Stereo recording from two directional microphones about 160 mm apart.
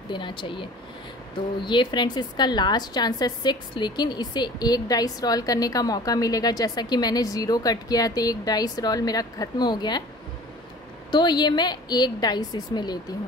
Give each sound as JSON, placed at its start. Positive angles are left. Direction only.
{"t": 0.1, "sound": "speech", "side_deg": 30}
{"t": 1.7, "sound": "a woman's voice", "side_deg": 30}
{"t": 11.1, "sound": "a woman's voice", "side_deg": 25}